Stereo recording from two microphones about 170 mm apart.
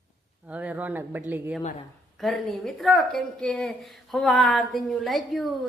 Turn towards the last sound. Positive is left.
turn(degrees=0)  # may be behind; listen again after turning